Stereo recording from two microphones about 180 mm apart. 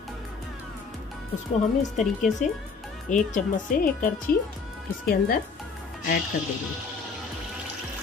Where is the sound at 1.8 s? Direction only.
40° left (ahead or behind).